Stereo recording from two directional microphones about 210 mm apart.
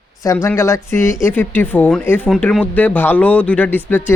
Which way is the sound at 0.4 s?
15° left (ahead or behind).